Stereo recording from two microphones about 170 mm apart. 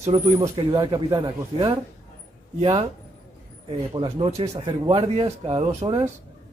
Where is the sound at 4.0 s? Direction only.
30° right (ahead or behind).